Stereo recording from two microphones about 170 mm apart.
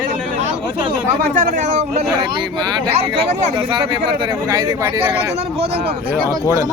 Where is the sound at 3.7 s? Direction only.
25° right (ahead or behind).